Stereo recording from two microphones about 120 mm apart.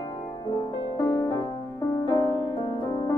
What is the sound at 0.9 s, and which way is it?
Music, 30° left (ahead or behind).